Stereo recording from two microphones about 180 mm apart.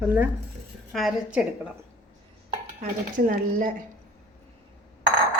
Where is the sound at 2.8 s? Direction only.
50° right (ahead or behind).